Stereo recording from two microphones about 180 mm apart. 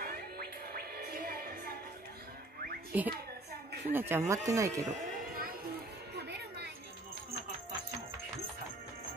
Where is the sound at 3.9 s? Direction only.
10° right (ahead or behind).